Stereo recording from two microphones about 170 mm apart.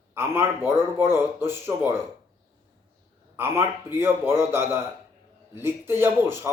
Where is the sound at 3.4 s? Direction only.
15° right (ahead or behind).